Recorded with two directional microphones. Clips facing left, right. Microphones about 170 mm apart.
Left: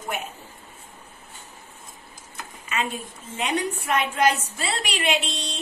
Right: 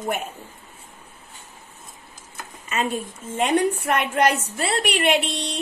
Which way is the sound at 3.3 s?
55° right (ahead or behind).